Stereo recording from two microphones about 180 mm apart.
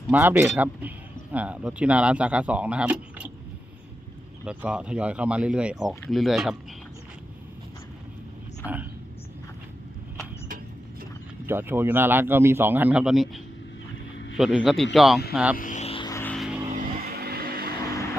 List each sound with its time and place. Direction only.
0.1 s a man's voice: 10° right (ahead or behind)
4.4 s speech: 5° right (ahead or behind)
8.6 s a sound: 10° right (ahead or behind)
11.4 s a man's voice: 10° right (ahead or behind)
15.5 s a sound: 45° left (ahead or behind)
16.0 s vehicle: 15° left (ahead or behind)
16.3 s vehicle: centre (ahead or behind)
17.2 s music: 60° right (ahead or behind)